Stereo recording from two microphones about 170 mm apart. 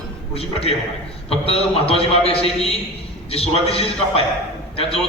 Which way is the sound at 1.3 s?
35° left (ahead or behind).